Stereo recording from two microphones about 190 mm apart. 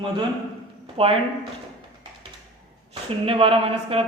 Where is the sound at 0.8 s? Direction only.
30° right (ahead or behind).